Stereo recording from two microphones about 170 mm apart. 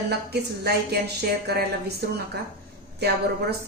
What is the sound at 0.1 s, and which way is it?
A woman's voice, 70° right (ahead or behind).